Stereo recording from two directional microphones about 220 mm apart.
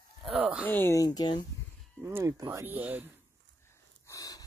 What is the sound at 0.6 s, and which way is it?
Speech, 10° left (ahead or behind).